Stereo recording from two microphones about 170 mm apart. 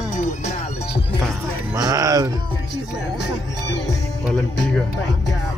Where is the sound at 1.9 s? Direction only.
20° right (ahead or behind).